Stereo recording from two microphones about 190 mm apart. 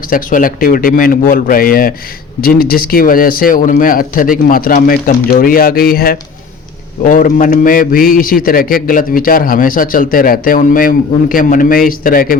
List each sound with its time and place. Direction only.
0.1 s a man's voice: 45° left (ahead or behind)